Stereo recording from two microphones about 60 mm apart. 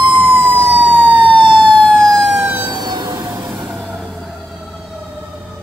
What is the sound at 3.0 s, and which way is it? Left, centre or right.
Vehicle, right.